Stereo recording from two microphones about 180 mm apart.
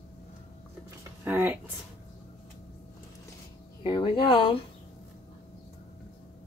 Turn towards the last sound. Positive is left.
turn(degrees=30)  # may be behind; listen again after turning